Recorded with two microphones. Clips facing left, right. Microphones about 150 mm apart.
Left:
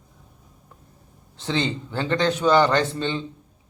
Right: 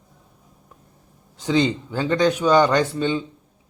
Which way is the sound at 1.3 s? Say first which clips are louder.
Right 5 dB; 15° right (ahead or behind).